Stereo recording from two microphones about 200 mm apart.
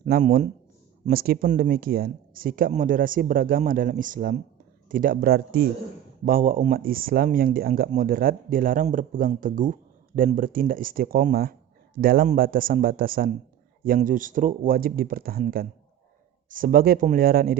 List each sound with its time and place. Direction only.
0.0 s a man's voice: 40° right (ahead or behind)